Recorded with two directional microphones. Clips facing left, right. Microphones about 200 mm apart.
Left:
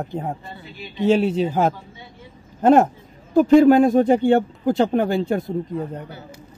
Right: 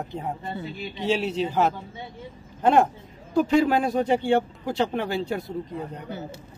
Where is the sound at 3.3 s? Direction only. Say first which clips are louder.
Left 8 dB; 50° left (ahead or behind).